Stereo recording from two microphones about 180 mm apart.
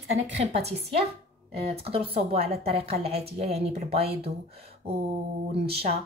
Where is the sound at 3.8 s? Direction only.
60° right (ahead or behind).